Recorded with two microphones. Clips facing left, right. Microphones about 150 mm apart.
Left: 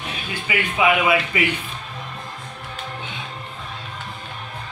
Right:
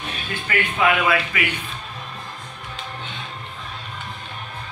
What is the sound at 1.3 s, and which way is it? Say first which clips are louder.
Speech: left 4 dB; 25° left (ahead or behind).